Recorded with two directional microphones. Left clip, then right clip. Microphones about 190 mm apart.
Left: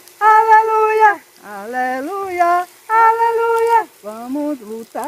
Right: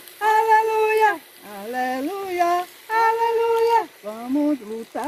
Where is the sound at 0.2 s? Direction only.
20° left (ahead or behind).